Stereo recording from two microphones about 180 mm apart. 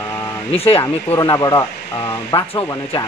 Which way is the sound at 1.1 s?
20° left (ahead or behind).